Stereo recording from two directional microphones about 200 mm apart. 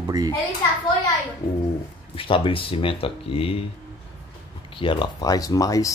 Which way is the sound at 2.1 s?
25° left (ahead or behind).